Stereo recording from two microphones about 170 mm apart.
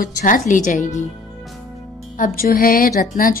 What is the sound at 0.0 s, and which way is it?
Speech, 50° left (ahead or behind).